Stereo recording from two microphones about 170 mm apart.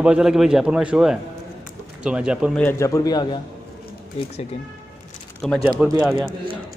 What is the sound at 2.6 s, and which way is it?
Speech, 15° left (ahead or behind).